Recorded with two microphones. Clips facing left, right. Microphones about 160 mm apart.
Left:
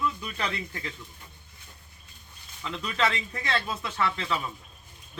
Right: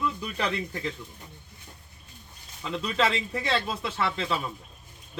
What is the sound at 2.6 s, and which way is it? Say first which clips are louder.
Speech: right 2 dB; 30° right (ahead or behind).